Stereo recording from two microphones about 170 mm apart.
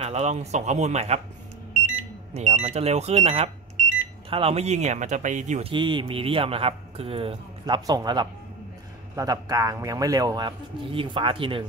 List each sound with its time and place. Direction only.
0.0 s speech: 40° right (ahead or behind)
2.3 s speech: 40° right (ahead or behind)
5.7 s a man's voice: 30° right (ahead or behind)